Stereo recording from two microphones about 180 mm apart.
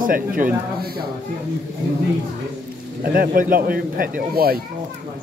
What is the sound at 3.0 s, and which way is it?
A man's voice, 50° right (ahead or behind).